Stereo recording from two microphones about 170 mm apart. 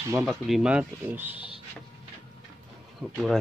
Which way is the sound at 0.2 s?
Centre (ahead or behind).